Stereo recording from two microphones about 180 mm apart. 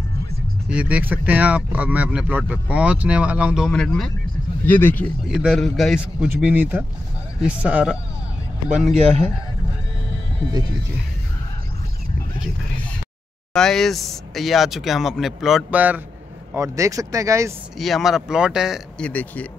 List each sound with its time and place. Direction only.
0.7 s speech: 5° right (ahead or behind); by 5.0 s 10° left (ahead or behind)
5.3 s speech: 5° right (ahead or behind)
6.2 s speech: 10° right (ahead or behind)
8.9 s a man's voice: 35° right (ahead or behind)
13.5 s speech: 5° left (ahead or behind); by 17.5 s 15° right (ahead or behind)
17.7 s speech: centre (ahead or behind)